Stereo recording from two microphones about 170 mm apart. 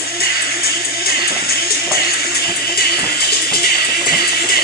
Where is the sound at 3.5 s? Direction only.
65° left (ahead or behind).